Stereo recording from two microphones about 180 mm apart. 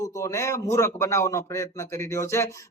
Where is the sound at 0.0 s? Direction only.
15° left (ahead or behind).